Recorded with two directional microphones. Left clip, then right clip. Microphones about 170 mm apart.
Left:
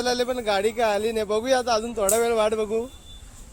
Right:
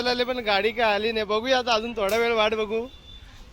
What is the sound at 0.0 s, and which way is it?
A man's voice, 10° left (ahead or behind).